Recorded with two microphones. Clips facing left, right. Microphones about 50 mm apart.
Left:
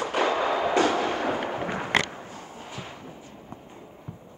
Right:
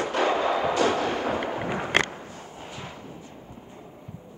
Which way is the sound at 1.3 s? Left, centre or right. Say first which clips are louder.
Right 1 dB; centre.